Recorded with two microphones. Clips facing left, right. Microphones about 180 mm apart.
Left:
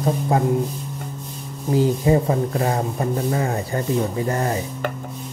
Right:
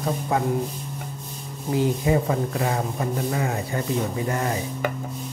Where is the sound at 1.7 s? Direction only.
35° left (ahead or behind).